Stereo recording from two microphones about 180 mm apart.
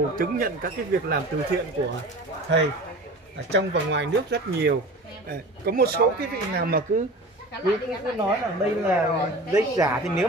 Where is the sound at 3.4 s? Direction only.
75° right (ahead or behind).